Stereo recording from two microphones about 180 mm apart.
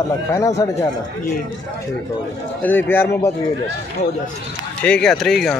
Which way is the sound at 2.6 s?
10° left (ahead or behind).